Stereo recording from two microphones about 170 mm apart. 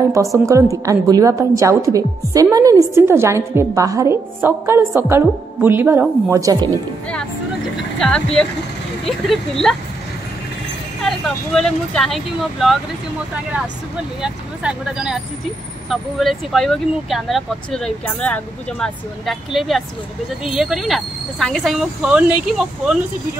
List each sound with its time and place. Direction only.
0.5 s a woman's voice: 20° right (ahead or behind)
7.7 s speech: 5° left (ahead or behind)
11.0 s speech: centre (ahead or behind)
14.2 s speech: 5° right (ahead or behind)